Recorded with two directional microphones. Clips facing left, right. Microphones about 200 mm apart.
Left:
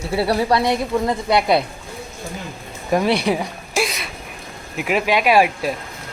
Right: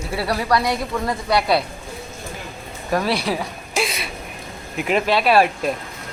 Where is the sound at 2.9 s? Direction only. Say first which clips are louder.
Left 3 dB; 15° left (ahead or behind).